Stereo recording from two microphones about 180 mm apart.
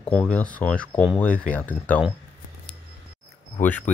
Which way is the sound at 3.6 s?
10° left (ahead or behind).